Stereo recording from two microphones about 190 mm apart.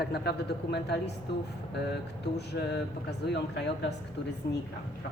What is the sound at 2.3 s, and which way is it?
Speech, 60° left (ahead or behind).